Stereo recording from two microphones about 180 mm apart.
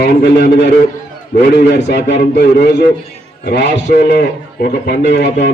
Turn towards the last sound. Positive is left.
turn(degrees=65)  # may be behind; listen again after turning